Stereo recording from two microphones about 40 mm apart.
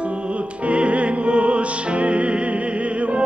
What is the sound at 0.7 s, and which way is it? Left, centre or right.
Music, right.